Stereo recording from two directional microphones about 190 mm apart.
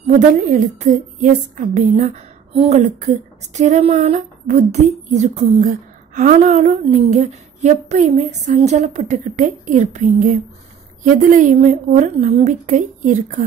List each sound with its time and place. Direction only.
0.0 s a woman's voice: 40° right (ahead or behind)